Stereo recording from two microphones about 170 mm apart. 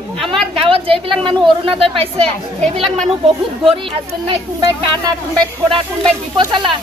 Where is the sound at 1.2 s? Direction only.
30° right (ahead or behind).